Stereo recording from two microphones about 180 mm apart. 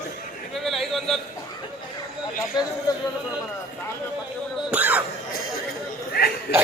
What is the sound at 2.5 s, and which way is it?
Speech, 25° left (ahead or behind).